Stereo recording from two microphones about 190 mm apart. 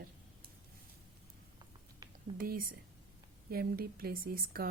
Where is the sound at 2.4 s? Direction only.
50° right (ahead or behind).